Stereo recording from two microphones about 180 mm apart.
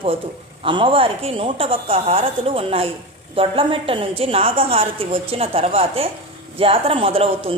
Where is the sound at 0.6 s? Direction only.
30° right (ahead or behind).